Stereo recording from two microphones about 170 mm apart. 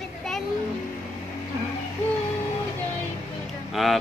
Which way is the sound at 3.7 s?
Centre (ahead or behind).